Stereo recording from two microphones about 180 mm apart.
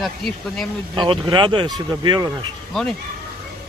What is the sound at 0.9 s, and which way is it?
Speech, 25° right (ahead or behind).